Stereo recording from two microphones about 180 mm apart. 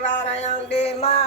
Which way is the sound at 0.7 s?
35° left (ahead or behind).